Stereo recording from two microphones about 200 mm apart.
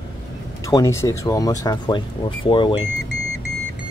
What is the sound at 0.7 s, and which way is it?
Speech, 15° left (ahead or behind).